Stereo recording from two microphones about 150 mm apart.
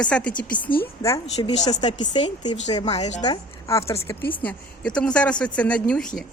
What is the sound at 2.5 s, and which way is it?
Speech, 50° left (ahead or behind).